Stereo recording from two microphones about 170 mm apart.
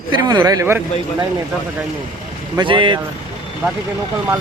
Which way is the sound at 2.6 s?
30° right (ahead or behind).